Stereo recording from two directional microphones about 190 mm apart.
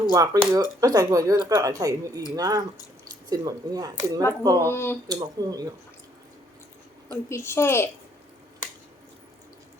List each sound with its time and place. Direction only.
0.0 s speech: 20° right (ahead or behind)
4.7 s a woman's voice: 10° left (ahead or behind)
5.0 s speech: 20° right (ahead or behind)
7.1 s a woman's voice: 15° left (ahead or behind)